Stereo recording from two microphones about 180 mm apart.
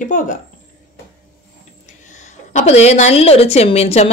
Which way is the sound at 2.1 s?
40° left (ahead or behind).